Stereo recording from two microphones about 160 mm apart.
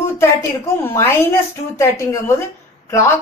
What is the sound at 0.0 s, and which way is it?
A woman's voice, 15° left (ahead or behind).